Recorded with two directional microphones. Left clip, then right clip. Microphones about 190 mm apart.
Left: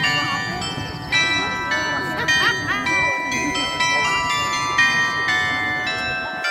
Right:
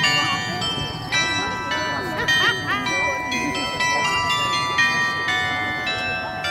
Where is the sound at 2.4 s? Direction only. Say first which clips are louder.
Left 1 dB; 50° left (ahead or behind).